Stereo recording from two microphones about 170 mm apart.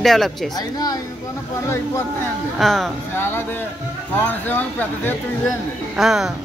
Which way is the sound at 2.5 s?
Centre (ahead or behind).